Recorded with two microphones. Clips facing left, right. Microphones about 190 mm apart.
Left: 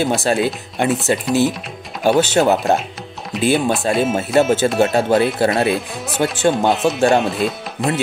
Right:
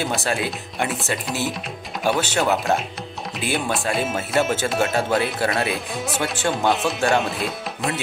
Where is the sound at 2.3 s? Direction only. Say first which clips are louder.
Left 6 dB; 40° left (ahead or behind).